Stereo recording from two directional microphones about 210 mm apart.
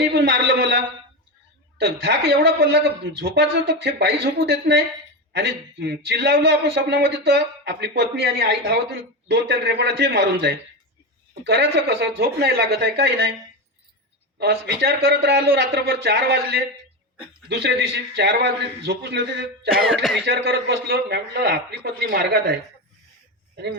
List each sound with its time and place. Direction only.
0.0 s speech: 50° right (ahead or behind)
1.8 s speech: 55° right (ahead or behind)
14.3 s speech: 50° right (ahead or behind)
19.8 s speech: centre (ahead or behind)
20.2 s speech: 50° right (ahead or behind)